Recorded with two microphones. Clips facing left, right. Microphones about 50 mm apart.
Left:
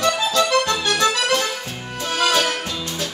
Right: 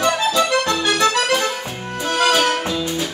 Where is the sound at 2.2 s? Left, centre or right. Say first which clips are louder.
Right 2 dB; centre.